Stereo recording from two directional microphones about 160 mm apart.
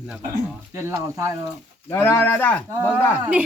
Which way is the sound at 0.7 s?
15° right (ahead or behind).